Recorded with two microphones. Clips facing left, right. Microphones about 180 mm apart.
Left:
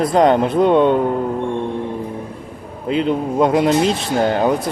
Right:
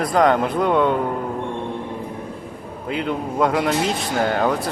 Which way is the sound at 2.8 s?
20° left (ahead or behind).